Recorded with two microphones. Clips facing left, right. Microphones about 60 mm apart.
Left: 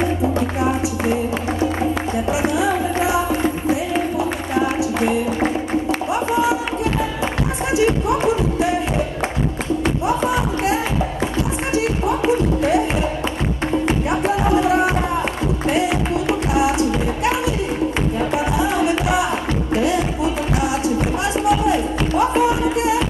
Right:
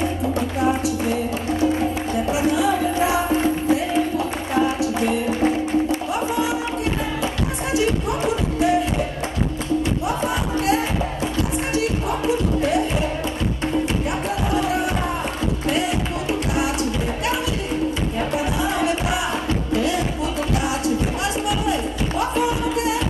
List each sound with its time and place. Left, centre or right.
2.5 s music: left
7.7 s music: left
10.0 s music: left
18.3 s music: left
22.5 s music: left